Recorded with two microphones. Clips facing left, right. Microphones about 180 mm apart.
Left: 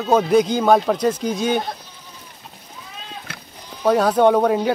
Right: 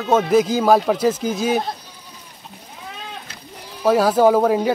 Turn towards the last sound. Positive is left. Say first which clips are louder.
# right 1 dB
turn(degrees=0)  # may be behind; listen again after turning